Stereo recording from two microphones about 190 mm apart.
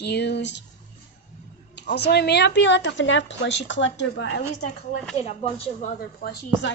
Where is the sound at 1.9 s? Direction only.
60° left (ahead or behind).